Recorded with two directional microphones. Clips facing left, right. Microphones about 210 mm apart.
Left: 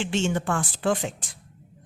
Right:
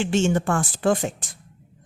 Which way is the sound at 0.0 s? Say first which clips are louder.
Right 4 dB; 45° right (ahead or behind).